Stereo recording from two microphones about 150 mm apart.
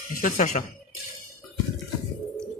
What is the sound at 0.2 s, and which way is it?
Speech, 65° left (ahead or behind).